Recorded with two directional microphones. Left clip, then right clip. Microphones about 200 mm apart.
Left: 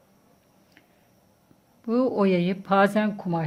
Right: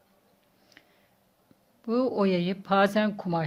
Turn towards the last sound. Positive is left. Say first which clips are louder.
# even
turn(degrees=-20)  # may be behind; listen again after turning